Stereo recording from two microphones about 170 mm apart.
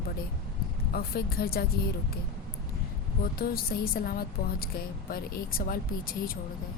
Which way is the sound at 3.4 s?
60° left (ahead or behind).